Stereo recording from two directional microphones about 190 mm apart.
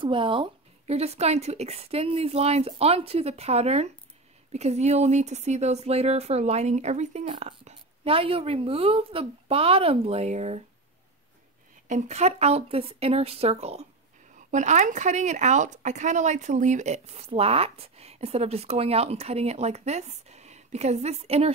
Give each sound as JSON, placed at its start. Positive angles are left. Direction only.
{"t": 0.0, "sound": "speech", "side_deg": -25}
{"t": 11.9, "sound": "speech", "side_deg": -35}